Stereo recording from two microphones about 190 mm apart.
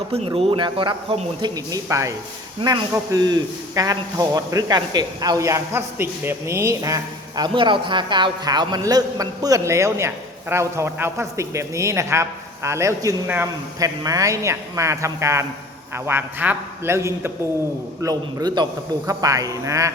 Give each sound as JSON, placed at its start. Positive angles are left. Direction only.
{"t": 0.1, "sound": "a man's voice", "side_deg": -30}